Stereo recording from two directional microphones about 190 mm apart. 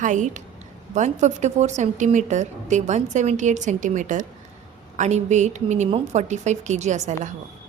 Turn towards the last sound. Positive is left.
turn(degrees=-40)  # may be behind; listen again after turning